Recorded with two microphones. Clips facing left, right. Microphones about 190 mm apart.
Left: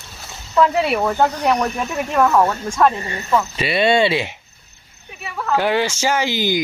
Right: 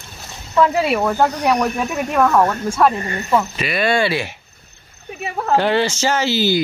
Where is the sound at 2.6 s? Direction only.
5° right (ahead or behind).